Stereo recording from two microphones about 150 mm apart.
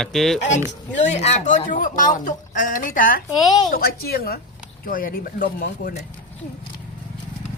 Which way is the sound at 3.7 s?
90° left.